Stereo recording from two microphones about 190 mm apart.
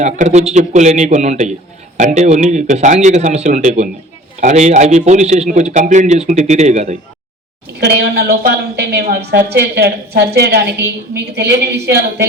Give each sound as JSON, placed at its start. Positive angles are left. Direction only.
{"t": 0.0, "sound": "a man's voice", "side_deg": -40}
{"t": 7.8, "sound": "a woman's voice", "side_deg": -60}